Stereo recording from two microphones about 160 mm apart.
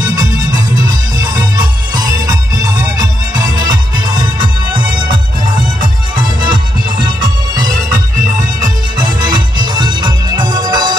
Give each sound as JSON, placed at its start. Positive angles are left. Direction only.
{"t": 0.0, "sound": "music", "side_deg": -25}
{"t": 8.9, "sound": "music", "side_deg": -30}